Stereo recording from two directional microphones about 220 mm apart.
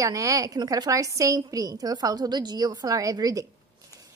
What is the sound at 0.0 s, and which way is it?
A woman's voice, 15° right (ahead or behind).